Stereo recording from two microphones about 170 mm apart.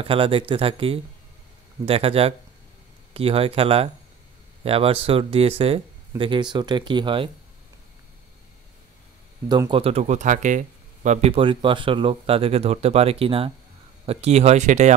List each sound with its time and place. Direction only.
0.0 s speech: 30° right (ahead or behind)
9.5 s speech: 25° right (ahead or behind); by 15.0 s 45° right (ahead or behind)